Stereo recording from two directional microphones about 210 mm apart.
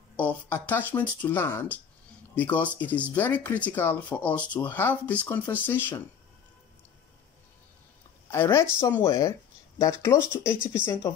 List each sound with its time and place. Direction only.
0.1 s speech: 5° left (ahead or behind)
8.3 s speech: 10° left (ahead or behind)